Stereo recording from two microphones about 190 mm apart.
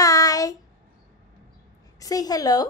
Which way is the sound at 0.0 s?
20° left (ahead or behind).